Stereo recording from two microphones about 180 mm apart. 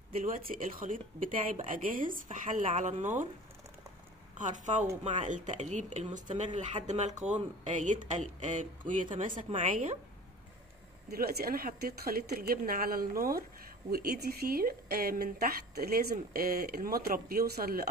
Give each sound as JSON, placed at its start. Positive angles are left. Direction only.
{"t": 0.1, "sound": "speech", "side_deg": -50}
{"t": 4.4, "sound": "speech", "side_deg": -45}
{"t": 11.1, "sound": "a woman's voice", "side_deg": -60}